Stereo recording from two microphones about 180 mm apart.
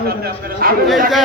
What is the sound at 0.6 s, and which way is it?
Speech, 55° right (ahead or behind).